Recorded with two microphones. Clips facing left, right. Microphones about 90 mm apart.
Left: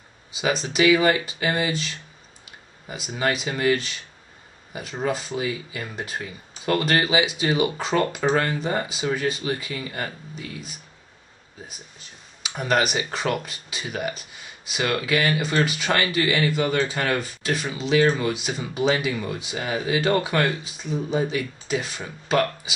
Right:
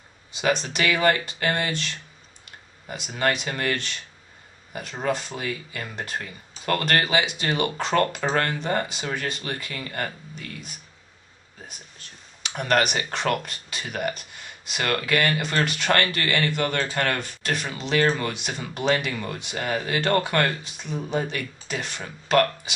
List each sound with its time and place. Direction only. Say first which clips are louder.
0.4 s speech: left 2 dB; 5° left (ahead or behind)
5.0 s speech: left 2 dB; 5° left (ahead or behind)
12.4 s speech: even; 5° left (ahead or behind)